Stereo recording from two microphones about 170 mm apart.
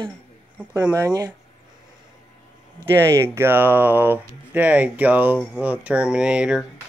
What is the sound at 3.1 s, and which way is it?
Speech, 15° right (ahead or behind).